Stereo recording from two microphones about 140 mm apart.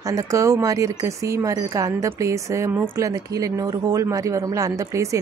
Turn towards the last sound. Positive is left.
turn(degrees=-20)  # may be behind; listen again after turning